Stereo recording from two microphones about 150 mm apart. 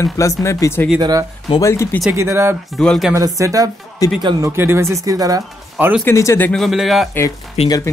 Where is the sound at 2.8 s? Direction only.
5° left (ahead or behind).